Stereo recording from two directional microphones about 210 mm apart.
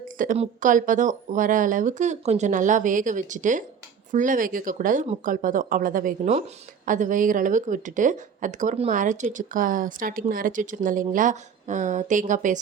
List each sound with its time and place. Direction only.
0.2 s speech: 40° right (ahead or behind)